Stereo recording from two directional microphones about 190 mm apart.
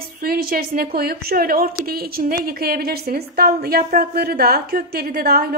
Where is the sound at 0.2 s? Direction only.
50° right (ahead or behind).